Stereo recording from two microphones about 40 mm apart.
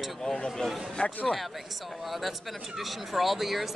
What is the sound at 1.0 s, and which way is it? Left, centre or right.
Speech, left.